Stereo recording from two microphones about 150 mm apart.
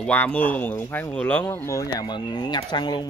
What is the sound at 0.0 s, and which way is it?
Speech, 10° left (ahead or behind).